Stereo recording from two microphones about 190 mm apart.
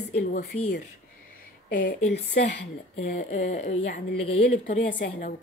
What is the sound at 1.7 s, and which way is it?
A woman's voice, 45° left (ahead or behind).